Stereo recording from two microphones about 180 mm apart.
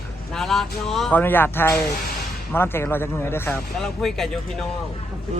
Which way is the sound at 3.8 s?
Centre (ahead or behind).